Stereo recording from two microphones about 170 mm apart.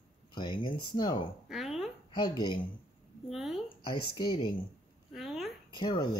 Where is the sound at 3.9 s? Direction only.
30° left (ahead or behind).